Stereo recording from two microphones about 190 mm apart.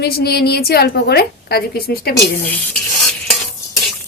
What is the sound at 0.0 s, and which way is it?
A woman's voice, 55° left (ahead or behind).